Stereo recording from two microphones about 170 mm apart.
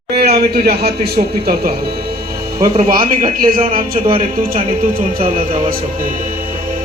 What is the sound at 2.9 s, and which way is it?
Speech, 60° right (ahead or behind).